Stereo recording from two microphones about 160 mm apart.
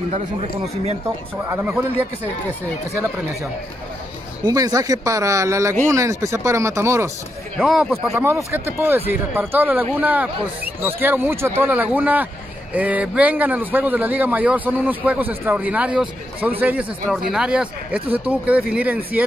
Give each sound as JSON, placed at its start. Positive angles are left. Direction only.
{"t": 1.0, "sound": "speech", "side_deg": -15}
{"t": 4.5, "sound": "speech", "side_deg": -25}
{"t": 7.6, "sound": "speech", "side_deg": -5}
{"t": 8.1, "sound": "speech", "side_deg": -15}